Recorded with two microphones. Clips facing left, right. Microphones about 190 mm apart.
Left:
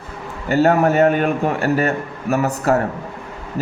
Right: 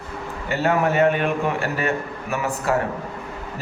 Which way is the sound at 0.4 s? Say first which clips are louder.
Left 6 dB; 40° left (ahead or behind).